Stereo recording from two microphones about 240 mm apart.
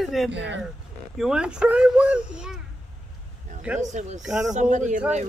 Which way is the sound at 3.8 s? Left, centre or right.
Right.